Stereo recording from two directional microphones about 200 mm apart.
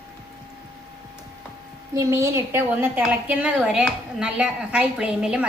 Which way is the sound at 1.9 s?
15° right (ahead or behind).